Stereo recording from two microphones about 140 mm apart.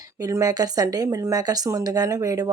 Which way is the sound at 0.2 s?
25° right (ahead or behind).